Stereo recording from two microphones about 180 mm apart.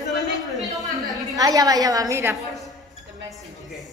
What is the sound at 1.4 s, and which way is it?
A woman's voice, 20° right (ahead or behind).